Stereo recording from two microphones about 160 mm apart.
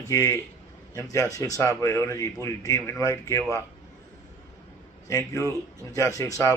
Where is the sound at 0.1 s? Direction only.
20° left (ahead or behind).